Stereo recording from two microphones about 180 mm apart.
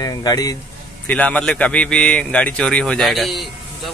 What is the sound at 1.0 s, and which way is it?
A man's voice, 5° left (ahead or behind).